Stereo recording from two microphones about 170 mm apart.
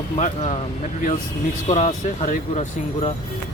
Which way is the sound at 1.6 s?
40° left (ahead or behind).